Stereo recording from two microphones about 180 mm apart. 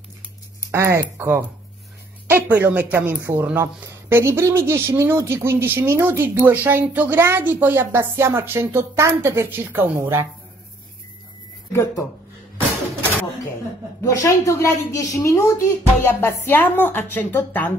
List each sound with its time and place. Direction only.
0.7 s speech: 15° right (ahead or behind)
11.7 s speech: 15° left (ahead or behind)
14.0 s speech: 20° left (ahead or behind)